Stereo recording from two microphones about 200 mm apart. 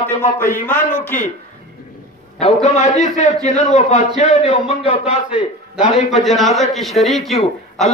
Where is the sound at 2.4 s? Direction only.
35° left (ahead or behind).